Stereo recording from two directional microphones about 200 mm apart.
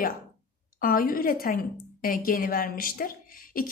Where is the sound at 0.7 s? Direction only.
45° left (ahead or behind).